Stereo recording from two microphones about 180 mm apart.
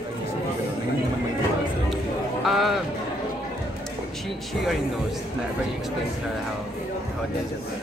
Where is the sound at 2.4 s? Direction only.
Centre (ahead or behind).